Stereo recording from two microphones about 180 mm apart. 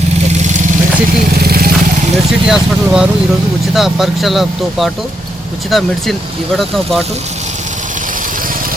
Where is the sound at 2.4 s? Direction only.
5° right (ahead or behind).